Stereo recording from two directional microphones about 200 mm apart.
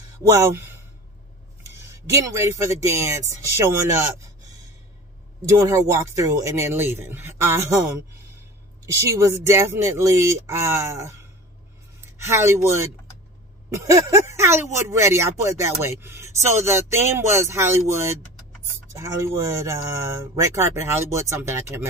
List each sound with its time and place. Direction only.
0.3 s speech: 15° right (ahead or behind)
1.9 s speech: 15° right (ahead or behind)
3.4 s a sound: 15° right (ahead or behind)
5.4 s speech: 15° right (ahead or behind)
9.2 s speech: 15° right (ahead or behind)
12.3 s speech: 15° right (ahead or behind)